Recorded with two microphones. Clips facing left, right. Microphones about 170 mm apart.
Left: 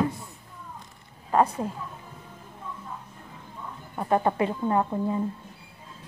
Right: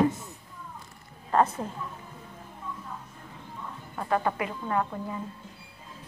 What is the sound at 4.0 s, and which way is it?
A woman's voice, 25° left (ahead or behind).